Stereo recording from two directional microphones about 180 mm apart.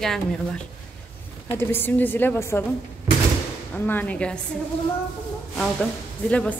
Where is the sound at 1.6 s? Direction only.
10° left (ahead or behind).